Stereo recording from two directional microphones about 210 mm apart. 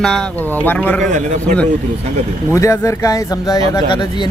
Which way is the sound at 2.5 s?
15° left (ahead or behind).